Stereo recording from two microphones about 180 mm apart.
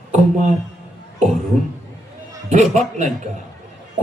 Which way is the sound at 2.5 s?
40° right (ahead or behind).